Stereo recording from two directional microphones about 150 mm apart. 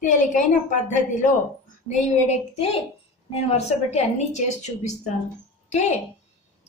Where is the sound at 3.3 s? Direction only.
45° left (ahead or behind).